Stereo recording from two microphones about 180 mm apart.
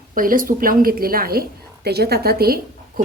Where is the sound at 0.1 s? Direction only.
50° right (ahead or behind).